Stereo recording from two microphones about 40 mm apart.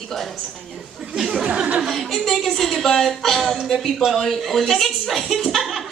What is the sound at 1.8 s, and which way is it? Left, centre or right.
A woman's voice, centre.